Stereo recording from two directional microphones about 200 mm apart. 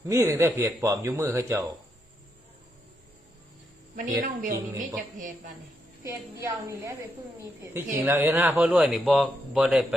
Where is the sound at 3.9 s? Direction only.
40° right (ahead or behind).